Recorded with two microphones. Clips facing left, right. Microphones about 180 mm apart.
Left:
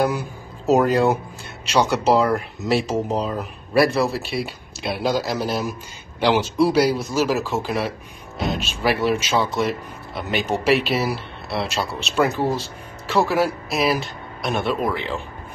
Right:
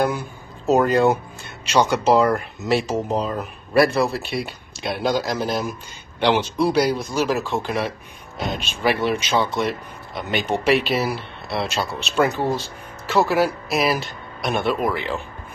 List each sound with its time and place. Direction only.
0.7 s speech: centre (ahead or behind)